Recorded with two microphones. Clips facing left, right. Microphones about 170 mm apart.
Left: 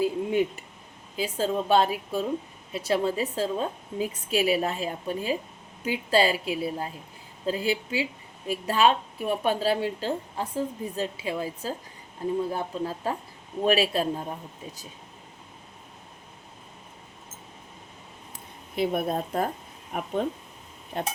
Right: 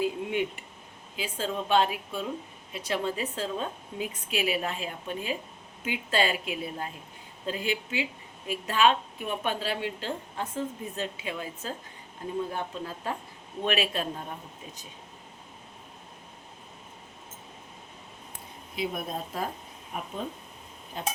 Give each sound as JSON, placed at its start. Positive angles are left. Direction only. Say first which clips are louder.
{"t": 0.0, "sound": "a sound", "louder": "left 4 dB", "side_deg": 35}
{"t": 1.1, "sound": "speech", "louder": "left 5 dB", "side_deg": 40}
{"t": 18.8, "sound": "speech", "louder": "left 7 dB", "side_deg": 55}